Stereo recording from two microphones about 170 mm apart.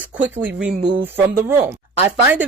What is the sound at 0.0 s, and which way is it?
Speech, 10° right (ahead or behind).